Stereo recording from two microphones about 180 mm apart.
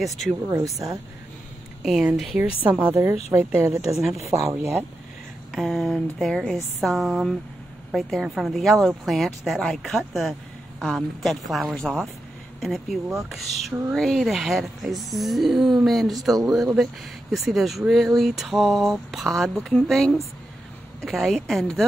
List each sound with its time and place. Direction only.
0.0 s speech: centre (ahead or behind)
0.5 s speech: 20° right (ahead or behind)
1.8 s speech: 5° right (ahead or behind)
5.5 s speech: centre (ahead or behind)